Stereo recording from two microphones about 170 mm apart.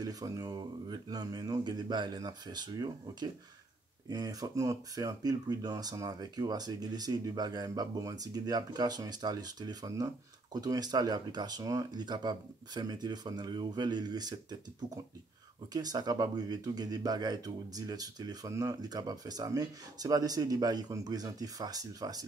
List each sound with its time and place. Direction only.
0.0 s speech: 20° right (ahead or behind)
15.7 s speech: 25° right (ahead or behind)